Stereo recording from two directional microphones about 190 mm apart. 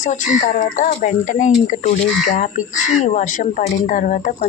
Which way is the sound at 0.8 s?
40° left (ahead or behind).